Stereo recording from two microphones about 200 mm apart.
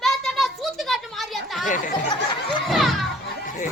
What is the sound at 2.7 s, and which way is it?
Children playing, centre (ahead or behind).